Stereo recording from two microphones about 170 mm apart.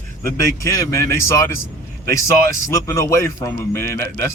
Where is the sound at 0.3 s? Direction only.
15° left (ahead or behind).